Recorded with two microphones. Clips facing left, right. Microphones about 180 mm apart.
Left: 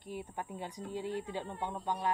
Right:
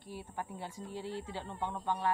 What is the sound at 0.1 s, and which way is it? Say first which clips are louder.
Speech: left 1 dB; 15° left (ahead or behind).